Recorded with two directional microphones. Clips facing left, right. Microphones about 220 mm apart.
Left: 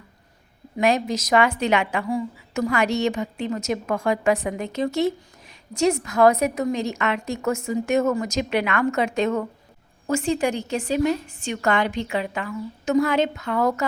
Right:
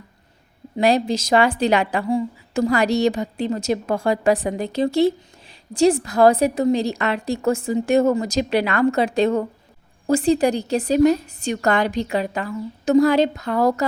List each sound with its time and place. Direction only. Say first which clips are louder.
0.8 s a woman's voice: right 3 dB; 35° right (ahead or behind)